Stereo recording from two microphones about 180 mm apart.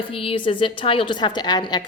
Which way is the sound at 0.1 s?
30° left (ahead or behind).